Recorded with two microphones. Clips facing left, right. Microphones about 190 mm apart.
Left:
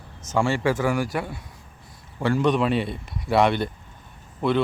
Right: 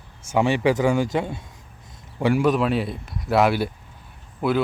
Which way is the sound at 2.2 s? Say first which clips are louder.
Right 2 dB; 10° right (ahead or behind).